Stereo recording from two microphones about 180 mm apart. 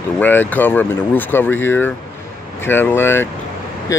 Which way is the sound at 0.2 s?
10° left (ahead or behind).